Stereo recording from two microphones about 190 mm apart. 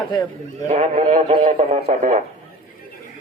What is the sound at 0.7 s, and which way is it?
Speech, 40° right (ahead or behind).